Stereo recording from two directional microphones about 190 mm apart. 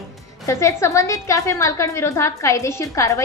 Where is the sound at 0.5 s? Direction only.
15° left (ahead or behind).